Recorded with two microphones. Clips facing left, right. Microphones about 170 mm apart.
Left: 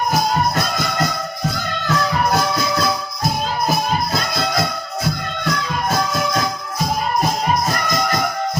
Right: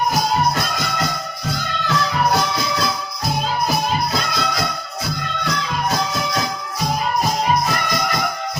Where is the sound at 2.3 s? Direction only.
45° left (ahead or behind).